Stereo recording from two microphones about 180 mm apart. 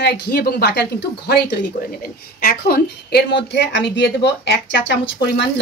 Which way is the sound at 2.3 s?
55° left (ahead or behind).